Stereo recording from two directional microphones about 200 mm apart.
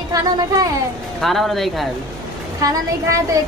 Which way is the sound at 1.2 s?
Centre (ahead or behind).